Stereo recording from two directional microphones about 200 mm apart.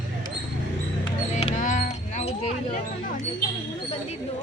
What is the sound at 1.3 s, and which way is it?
Livestock, 35° left (ahead or behind).